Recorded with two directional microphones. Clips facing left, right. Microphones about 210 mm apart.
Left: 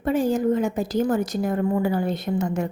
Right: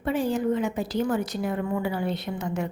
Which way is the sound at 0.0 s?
45° left (ahead or behind).